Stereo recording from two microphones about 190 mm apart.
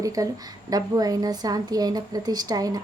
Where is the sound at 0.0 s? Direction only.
20° right (ahead or behind).